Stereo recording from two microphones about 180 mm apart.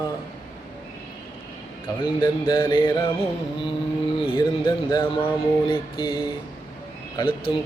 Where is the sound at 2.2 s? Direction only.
25° left (ahead or behind).